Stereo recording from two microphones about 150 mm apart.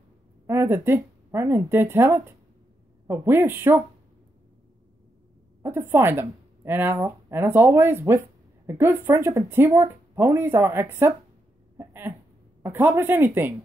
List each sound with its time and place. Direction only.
0.5 s speech: 15° right (ahead or behind)
5.6 s speech: 15° right (ahead or behind)
11.8 s a sound: 15° right (ahead or behind)
12.6 s speech: 15° right (ahead or behind)